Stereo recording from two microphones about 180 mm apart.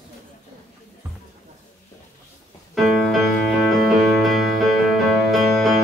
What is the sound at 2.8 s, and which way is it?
Music, centre (ahead or behind).